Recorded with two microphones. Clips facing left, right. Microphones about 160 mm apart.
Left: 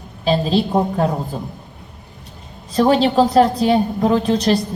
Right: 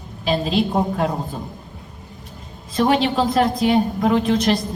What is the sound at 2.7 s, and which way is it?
A woman's voice, 35° left (ahead or behind).